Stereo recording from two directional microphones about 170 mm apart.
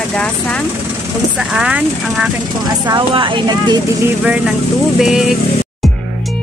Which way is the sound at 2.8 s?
30° right (ahead or behind).